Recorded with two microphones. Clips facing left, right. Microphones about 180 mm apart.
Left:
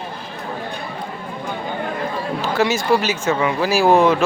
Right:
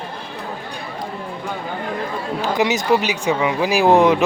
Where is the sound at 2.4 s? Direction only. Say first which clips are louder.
Even; 15° right (ahead or behind).